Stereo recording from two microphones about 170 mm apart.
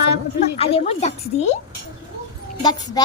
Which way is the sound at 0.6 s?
35° left (ahead or behind).